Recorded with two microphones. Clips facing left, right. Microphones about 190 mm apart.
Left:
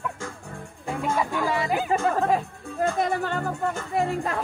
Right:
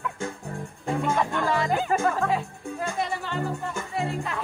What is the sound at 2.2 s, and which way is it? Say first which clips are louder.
Music: left 2 dB; 45° left (ahead or behind).